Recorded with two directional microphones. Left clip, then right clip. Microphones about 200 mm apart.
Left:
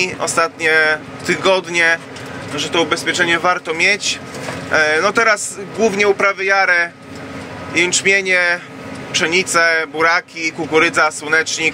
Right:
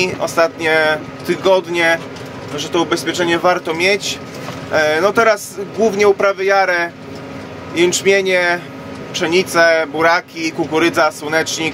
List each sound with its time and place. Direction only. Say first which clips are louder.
0.0 s speech: right 2 dB; 10° right (ahead or behind)
2.5 s speech: even; 25° right (ahead or behind)